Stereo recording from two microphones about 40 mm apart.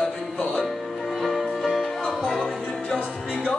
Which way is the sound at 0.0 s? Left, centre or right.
Left.